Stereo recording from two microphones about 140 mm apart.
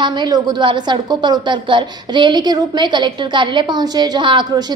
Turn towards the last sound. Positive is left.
turn(degrees=-35)  # may be behind; listen again after turning